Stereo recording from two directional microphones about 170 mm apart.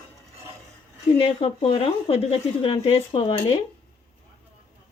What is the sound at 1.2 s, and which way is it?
Speech, 35° left (ahead or behind).